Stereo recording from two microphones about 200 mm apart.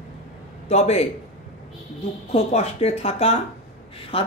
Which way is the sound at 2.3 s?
30° left (ahead or behind).